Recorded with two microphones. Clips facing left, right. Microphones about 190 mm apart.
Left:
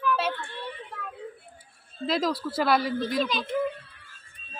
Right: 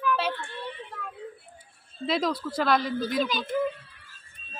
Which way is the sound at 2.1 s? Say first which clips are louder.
Even; centre (ahead or behind).